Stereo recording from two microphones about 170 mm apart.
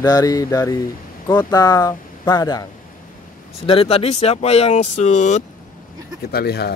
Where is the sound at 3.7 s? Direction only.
35° left (ahead or behind).